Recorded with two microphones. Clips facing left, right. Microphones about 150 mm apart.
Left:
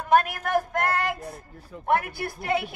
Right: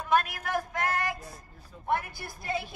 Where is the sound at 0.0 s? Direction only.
55° left (ahead or behind).